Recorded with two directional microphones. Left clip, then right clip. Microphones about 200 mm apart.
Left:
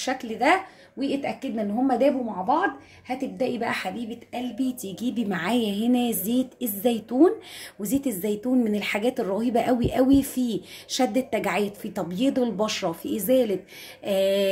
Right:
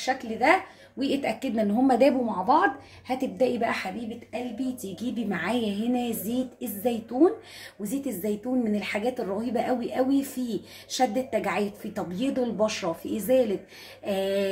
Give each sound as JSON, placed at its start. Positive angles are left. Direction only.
{"t": 0.0, "sound": "speech", "side_deg": 35}
{"t": 0.9, "sound": "a woman's voice", "side_deg": 10}
{"t": 4.3, "sound": "speech", "side_deg": 35}